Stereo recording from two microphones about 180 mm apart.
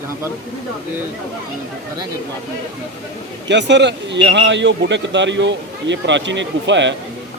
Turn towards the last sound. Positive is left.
turn(degrees=-85)